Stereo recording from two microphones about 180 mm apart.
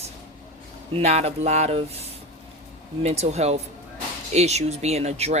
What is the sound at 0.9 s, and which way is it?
Speech, 35° right (ahead or behind).